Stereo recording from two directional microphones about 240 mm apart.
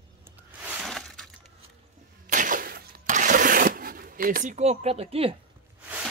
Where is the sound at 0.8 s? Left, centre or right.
Centre.